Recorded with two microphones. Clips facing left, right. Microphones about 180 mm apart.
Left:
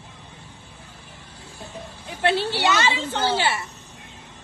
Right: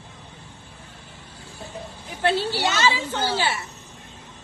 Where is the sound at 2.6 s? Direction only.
60° left (ahead or behind).